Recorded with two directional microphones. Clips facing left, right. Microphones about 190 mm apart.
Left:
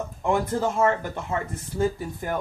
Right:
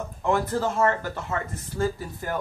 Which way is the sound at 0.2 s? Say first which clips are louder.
Even; 15° left (ahead or behind).